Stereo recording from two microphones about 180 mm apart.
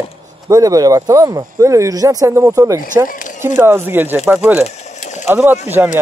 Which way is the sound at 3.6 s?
10° right (ahead or behind).